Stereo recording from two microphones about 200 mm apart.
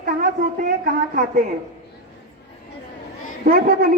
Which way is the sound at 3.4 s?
45° right (ahead or behind).